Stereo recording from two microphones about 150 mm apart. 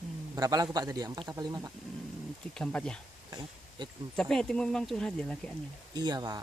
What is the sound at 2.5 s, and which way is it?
Speech, 5° left (ahead or behind).